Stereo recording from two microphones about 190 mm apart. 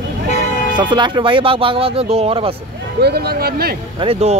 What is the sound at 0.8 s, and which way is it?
Speech, 25° right (ahead or behind).